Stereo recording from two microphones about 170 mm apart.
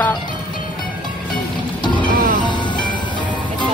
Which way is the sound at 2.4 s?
25° left (ahead or behind).